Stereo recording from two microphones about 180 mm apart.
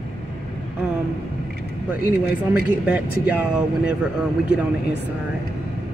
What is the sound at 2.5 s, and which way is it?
Speech, 10° right (ahead or behind).